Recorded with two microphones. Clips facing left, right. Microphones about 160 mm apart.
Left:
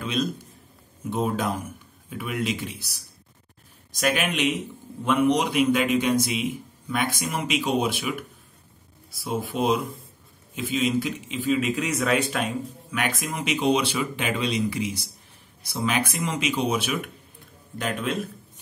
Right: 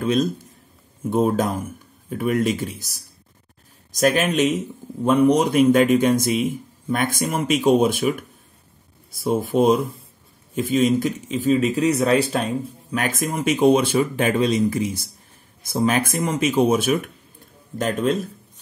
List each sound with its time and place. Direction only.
0.0 s a man's voice: 45° right (ahead or behind)